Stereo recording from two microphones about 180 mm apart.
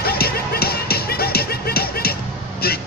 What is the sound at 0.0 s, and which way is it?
Music, 60° left (ahead or behind).